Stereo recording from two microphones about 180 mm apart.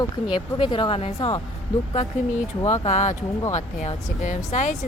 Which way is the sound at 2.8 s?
40° left (ahead or behind).